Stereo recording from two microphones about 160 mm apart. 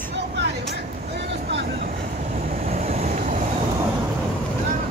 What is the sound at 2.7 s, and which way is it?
Vehicle, 40° right (ahead or behind).